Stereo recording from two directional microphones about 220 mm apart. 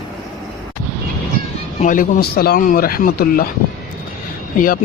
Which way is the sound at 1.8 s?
35° left (ahead or behind).